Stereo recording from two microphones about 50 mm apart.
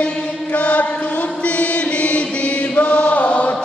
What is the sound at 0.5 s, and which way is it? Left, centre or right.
Chant, left.